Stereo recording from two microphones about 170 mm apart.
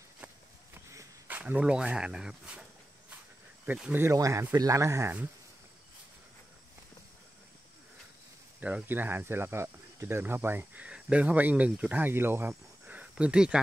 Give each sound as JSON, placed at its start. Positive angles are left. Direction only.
{"t": 0.9, "sound": "speech", "side_deg": -10}
{"t": 3.6, "sound": "speech", "side_deg": -10}
{"t": 8.5, "sound": "speech", "side_deg": -10}